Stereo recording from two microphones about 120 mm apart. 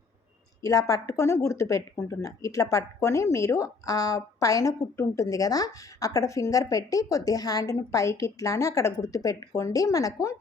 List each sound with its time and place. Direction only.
0.6 s speech: 30° left (ahead or behind)